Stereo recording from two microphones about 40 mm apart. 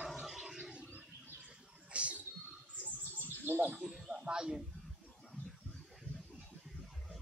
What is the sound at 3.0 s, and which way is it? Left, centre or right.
Bird, right.